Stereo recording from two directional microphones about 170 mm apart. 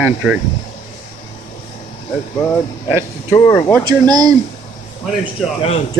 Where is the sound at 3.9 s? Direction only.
25° right (ahead or behind).